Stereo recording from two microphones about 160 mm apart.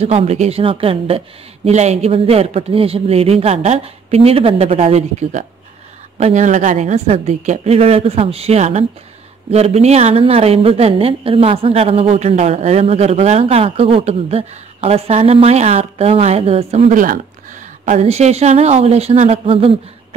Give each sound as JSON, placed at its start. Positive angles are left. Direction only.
{"t": 0.0, "sound": "speech", "side_deg": -40}